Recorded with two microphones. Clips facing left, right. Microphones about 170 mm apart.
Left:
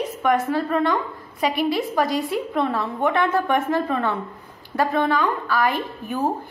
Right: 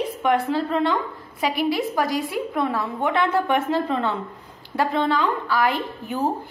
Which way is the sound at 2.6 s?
10° right (ahead or behind).